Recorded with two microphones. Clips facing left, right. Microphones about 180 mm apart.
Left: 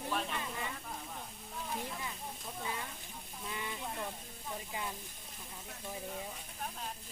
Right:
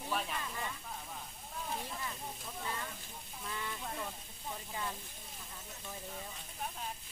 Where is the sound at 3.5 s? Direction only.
15° left (ahead or behind).